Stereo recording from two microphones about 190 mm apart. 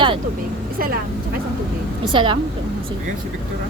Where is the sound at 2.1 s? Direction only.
25° right (ahead or behind).